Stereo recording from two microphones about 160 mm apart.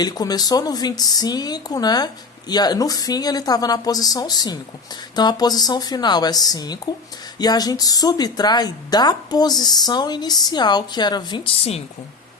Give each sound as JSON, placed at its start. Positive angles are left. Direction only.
{"t": 0.0, "sound": "speech", "side_deg": 25}